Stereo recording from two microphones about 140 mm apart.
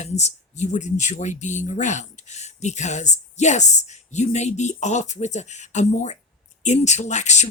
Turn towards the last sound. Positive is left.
turn(degrees=55)  # may be behind; listen again after turning